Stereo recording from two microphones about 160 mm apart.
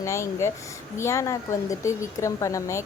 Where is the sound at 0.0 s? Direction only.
20° left (ahead or behind).